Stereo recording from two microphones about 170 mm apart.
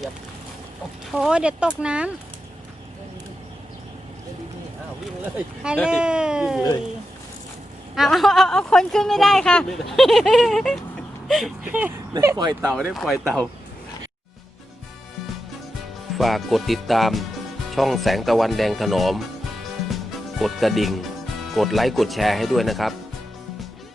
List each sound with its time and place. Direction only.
1.1 s speech: 5° right (ahead or behind)
5.2 s speech: 5° right (ahead or behind)
7.9 s speech: centre (ahead or behind)
12.1 s speech: 20° right (ahead or behind)
12.6 s speech: centre (ahead or behind)
16.1 s speech: centre (ahead or behind)
20.4 s speech: centre (ahead or behind)